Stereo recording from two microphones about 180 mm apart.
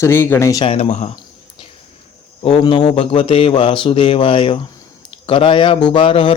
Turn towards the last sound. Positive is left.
turn(degrees=30)  # may be behind; listen again after turning